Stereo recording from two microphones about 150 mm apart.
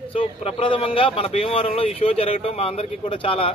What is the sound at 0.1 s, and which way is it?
Speech, 40° left (ahead or behind).